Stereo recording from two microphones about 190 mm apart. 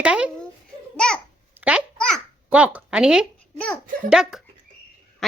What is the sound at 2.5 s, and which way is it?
A child's voice, 5° right (ahead or behind).